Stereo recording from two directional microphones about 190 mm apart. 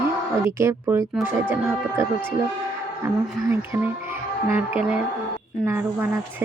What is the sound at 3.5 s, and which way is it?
Speech, 10° right (ahead or behind).